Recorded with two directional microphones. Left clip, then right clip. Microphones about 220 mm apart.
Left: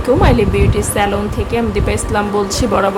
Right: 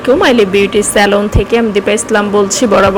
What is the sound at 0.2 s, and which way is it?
Speech, 15° right (ahead or behind).